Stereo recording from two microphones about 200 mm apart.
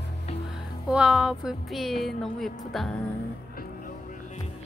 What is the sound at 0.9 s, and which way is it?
Speech, 5° right (ahead or behind).